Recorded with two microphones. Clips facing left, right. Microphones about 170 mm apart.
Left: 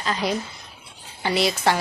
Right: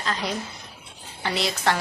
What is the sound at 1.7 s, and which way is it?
Speech, 5° left (ahead or behind).